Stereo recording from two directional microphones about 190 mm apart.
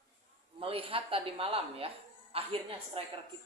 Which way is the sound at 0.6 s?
30° right (ahead or behind).